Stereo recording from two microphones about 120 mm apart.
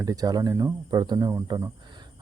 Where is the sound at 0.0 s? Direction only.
30° right (ahead or behind).